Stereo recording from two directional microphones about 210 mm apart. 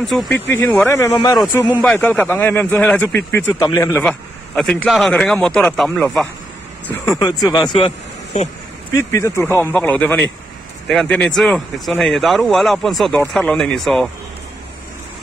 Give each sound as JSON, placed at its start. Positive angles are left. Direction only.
{"t": 0.0, "sound": "speech", "side_deg": 0}
{"t": 0.3, "sound": "speech", "side_deg": 10}
{"t": 1.8, "sound": "speech", "side_deg": 10}
{"t": 6.9, "sound": "speech", "side_deg": 15}
{"t": 8.9, "sound": "speech", "side_deg": 15}